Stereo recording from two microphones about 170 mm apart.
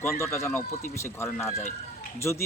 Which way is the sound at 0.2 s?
15° left (ahead or behind).